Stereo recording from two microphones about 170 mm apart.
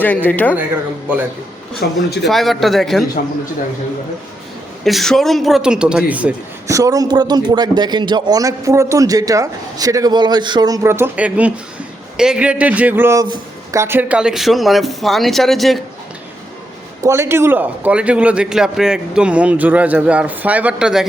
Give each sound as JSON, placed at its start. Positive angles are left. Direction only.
{"t": 0.0, "sound": "speech", "side_deg": 10}
{"t": 1.8, "sound": "speech", "side_deg": 65}
{"t": 2.2, "sound": "speech", "side_deg": 0}
{"t": 4.8, "sound": "speech", "side_deg": 0}
{"t": 6.7, "sound": "a man's voice", "side_deg": -20}
{"t": 17.0, "sound": "a man's voice", "side_deg": -15}